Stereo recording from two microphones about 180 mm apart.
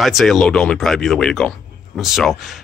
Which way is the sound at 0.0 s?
Centre (ahead or behind).